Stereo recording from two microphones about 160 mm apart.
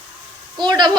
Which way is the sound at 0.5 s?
30° right (ahead or behind).